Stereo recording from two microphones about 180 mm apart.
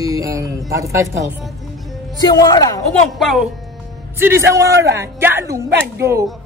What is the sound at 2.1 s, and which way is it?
Speech, 20° left (ahead or behind).